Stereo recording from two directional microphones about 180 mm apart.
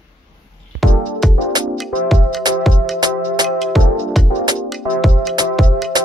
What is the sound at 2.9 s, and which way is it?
Music, 25° right (ahead or behind).